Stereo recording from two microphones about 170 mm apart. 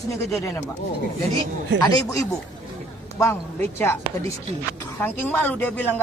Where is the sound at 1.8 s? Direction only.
20° left (ahead or behind).